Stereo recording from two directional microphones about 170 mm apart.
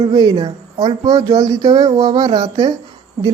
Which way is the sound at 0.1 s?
25° right (ahead or behind).